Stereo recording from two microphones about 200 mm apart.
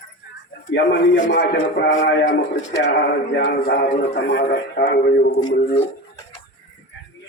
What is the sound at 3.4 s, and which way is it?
A man's voice, 55° left (ahead or behind).